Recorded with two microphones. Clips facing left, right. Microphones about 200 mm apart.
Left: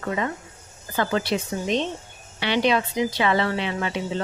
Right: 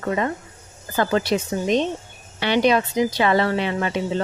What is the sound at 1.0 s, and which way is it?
A woman's voice, 45° right (ahead or behind).